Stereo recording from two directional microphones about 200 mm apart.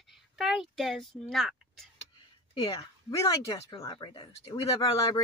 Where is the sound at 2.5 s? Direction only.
20° left (ahead or behind).